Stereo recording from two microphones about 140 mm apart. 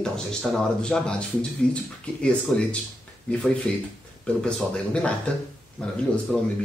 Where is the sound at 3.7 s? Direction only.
5° left (ahead or behind).